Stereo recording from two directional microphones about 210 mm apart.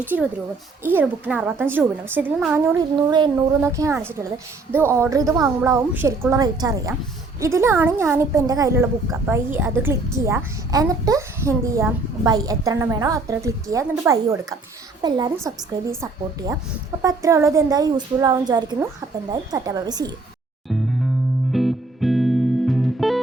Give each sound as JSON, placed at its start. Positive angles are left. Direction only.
{"t": 0.0, "sound": "a woman's voice", "side_deg": -10}
{"t": 2.7, "sound": "a woman's voice", "side_deg": -15}
{"t": 21.5, "sound": "music", "side_deg": 0}